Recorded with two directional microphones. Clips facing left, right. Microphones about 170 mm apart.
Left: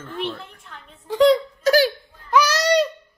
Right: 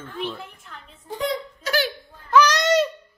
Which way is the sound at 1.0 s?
90° left.